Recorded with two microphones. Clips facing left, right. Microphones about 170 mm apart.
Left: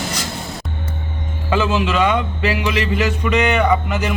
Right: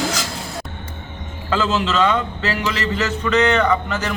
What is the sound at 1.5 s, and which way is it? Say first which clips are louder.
A man's voice: left 1 dB; 15° left (ahead or behind).